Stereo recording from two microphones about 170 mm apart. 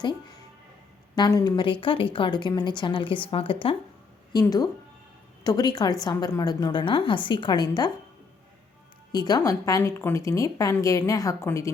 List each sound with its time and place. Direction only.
1.1 s a woman's voice: 25° left (ahead or behind)
4.3 s a woman's voice: 20° left (ahead or behind)
9.1 s a woman's voice: 25° left (ahead or behind)